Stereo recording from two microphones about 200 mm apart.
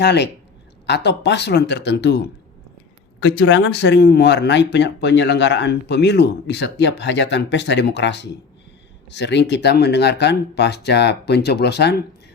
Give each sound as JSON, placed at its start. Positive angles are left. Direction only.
{"t": 0.0, "sound": "speech", "side_deg": 60}